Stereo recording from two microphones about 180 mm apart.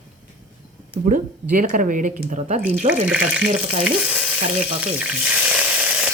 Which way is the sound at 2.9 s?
10° right (ahead or behind).